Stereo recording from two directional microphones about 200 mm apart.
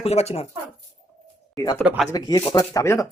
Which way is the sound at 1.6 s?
15° left (ahead or behind).